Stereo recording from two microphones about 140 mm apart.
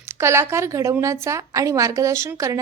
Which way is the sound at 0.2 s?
20° right (ahead or behind).